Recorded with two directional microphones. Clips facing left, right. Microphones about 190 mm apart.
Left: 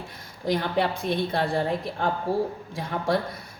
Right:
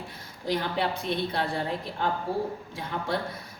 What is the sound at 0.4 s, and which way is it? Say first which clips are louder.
A woman's voice: left 3 dB; 50° left (ahead or behind).